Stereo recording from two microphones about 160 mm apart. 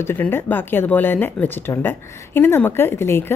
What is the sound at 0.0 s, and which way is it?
A woman's voice, 15° left (ahead or behind).